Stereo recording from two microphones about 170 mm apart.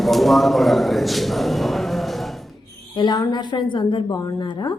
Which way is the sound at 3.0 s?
25° left (ahead or behind).